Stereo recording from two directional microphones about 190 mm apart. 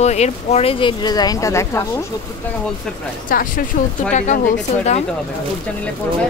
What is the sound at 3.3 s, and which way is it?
Speech, 45° left (ahead or behind).